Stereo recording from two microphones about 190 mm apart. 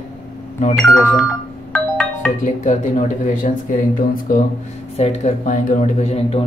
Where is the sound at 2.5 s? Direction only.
40° left (ahead or behind).